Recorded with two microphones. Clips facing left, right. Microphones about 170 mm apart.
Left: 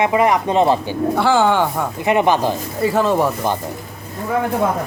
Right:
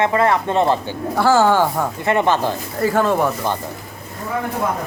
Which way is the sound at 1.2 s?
5° right (ahead or behind).